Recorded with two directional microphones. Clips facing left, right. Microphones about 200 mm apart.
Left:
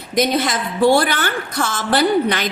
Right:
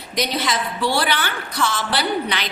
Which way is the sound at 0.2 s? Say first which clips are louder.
Left 5 dB; 50° left (ahead or behind).